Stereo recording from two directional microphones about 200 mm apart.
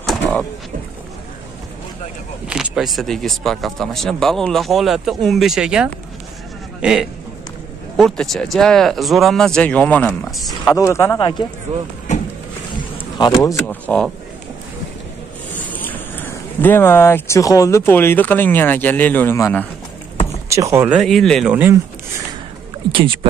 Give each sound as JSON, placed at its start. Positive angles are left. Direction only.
{"t": 2.4, "sound": "a man's voice", "side_deg": -5}
{"t": 10.6, "sound": "speech", "side_deg": 15}
{"t": 12.9, "sound": "speech", "side_deg": 25}
{"t": 15.6, "sound": "speech", "side_deg": 10}
{"t": 20.4, "sound": "speech", "side_deg": -15}
{"t": 22.8, "sound": "speech", "side_deg": -25}